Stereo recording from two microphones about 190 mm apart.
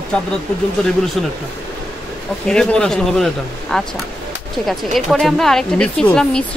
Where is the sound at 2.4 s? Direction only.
5° left (ahead or behind).